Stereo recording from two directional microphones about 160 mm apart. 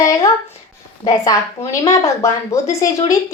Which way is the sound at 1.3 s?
20° left (ahead or behind).